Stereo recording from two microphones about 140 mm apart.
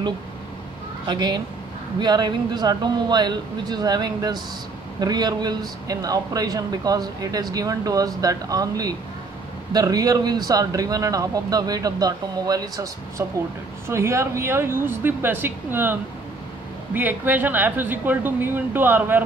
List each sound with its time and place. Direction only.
1.0 s speech: 30° right (ahead or behind); by 19.2 s 15° right (ahead or behind)